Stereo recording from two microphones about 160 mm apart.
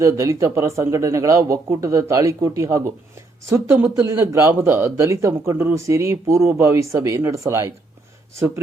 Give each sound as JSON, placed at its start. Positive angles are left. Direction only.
{"t": 0.0, "sound": "speech", "side_deg": -20}